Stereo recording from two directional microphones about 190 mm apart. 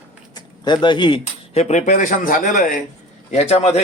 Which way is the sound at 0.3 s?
25° left (ahead or behind).